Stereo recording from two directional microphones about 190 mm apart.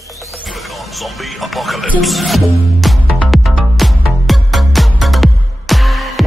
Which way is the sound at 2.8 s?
5° left (ahead or behind).